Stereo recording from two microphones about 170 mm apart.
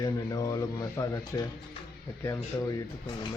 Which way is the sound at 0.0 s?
20° left (ahead or behind).